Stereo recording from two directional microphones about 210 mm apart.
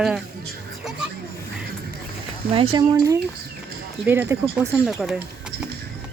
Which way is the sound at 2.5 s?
25° right (ahead or behind).